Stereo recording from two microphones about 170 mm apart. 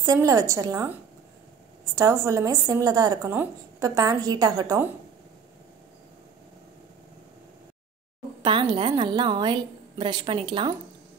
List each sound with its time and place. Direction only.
0.0 s speech: 20° right (ahead or behind)
2.0 s speech: 20° right (ahead or behind)
8.4 s speech: 30° right (ahead or behind)